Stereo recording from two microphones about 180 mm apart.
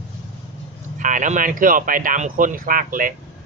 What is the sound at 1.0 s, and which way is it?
Speech, 45° right (ahead or behind).